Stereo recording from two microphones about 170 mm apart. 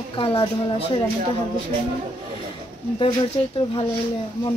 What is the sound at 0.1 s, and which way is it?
Speech, 25° left (ahead or behind).